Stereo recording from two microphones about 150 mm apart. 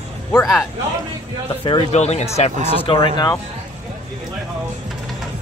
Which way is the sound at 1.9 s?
45° left (ahead or behind).